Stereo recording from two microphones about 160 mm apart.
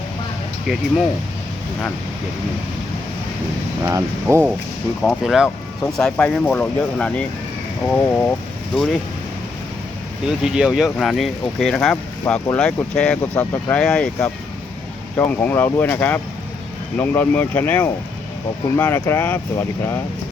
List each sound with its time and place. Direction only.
3.8 s speech: 15° right (ahead or behind)
5.0 s speech: centre (ahead or behind)
10.4 s speech: 5° right (ahead or behind)
12.2 s speech: 15° left (ahead or behind)
12.5 s speech: 5° left (ahead or behind)